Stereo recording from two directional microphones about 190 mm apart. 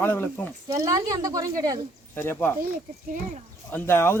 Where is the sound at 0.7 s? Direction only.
15° right (ahead or behind).